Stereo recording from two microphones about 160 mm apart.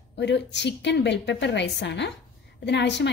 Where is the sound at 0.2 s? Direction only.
90° left.